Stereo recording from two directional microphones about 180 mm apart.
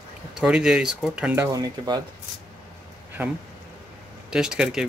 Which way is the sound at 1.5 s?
20° right (ahead or behind).